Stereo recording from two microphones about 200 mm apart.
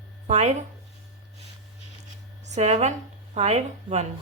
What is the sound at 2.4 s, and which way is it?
A woman's voice, 35° right (ahead or behind).